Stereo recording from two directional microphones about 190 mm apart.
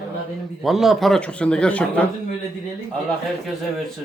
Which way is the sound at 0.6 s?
Centre (ahead or behind).